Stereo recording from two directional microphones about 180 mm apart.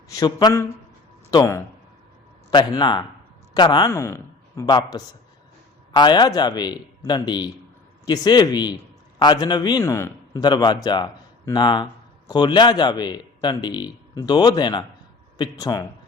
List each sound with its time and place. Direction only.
0.1 s a man's voice: 20° left (ahead or behind)